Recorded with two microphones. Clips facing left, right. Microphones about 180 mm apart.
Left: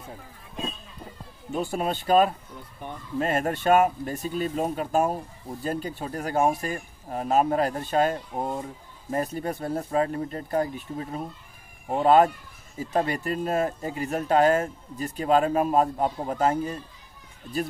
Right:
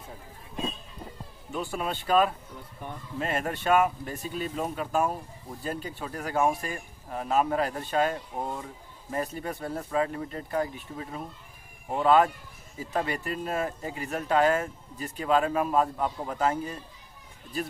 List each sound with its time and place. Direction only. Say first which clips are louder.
1.5 s speech: left 4 dB; 40° left (ahead or behind)